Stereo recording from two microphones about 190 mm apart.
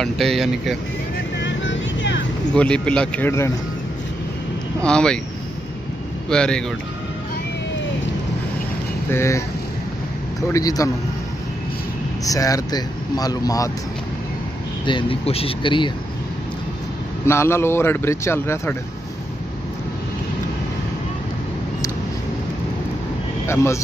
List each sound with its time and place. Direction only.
0.0 s speech: centre (ahead or behind)
1.4 s vehicle: 75° left (ahead or behind)
2.5 s a man's voice: 5° left (ahead or behind)
4.8 s speech: 5° left (ahead or behind)
6.2 s speech: 5° left (ahead or behind)
9.1 s a man's voice: 15° left (ahead or behind)
10.5 s a man's voice: 20° left (ahead or behind)
12.3 s speech: 20° left (ahead or behind)
14.9 s speech: 25° left (ahead or behind)
17.3 s a man's voice: 15° left (ahead or behind)
23.4 s speech: 15° left (ahead or behind)